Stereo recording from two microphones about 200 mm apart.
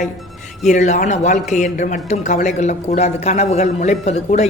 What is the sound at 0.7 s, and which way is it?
A man's voice, 40° left (ahead or behind).